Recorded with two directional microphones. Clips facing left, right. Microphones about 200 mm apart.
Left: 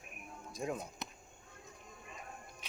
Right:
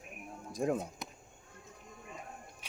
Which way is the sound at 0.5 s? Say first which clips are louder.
Right 7 dB; 50° right (ahead or behind).